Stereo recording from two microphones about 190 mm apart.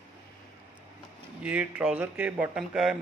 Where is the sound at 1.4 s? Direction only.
5° right (ahead or behind).